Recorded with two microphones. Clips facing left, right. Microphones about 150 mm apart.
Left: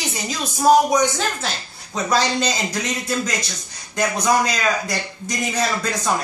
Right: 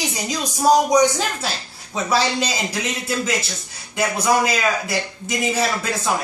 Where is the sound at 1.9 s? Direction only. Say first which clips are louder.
Even; 5° right (ahead or behind).